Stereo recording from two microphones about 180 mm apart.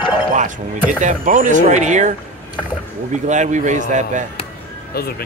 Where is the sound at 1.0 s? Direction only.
45° right (ahead or behind).